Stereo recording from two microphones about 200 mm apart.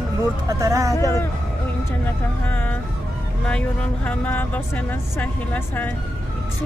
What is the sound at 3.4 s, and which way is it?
Speech, 5° left (ahead or behind).